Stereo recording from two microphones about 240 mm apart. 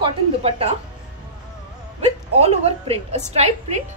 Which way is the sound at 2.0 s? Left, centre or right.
Right.